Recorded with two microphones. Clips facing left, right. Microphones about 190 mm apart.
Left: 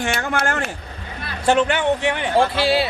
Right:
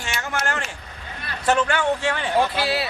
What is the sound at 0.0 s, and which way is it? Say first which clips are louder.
Speech: left 6 dB; 55° left (ahead or behind).